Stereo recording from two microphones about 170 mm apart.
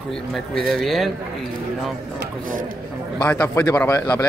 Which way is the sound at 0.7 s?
Centre (ahead or behind).